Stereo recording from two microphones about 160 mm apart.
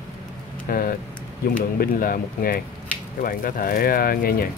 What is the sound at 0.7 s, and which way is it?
Speech, 65° left (ahead or behind).